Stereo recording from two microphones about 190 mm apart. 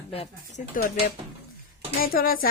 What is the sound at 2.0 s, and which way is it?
Speech, 50° left (ahead or behind).